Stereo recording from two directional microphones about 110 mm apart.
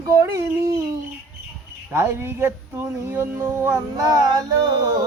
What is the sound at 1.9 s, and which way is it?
Speech, 25° right (ahead or behind).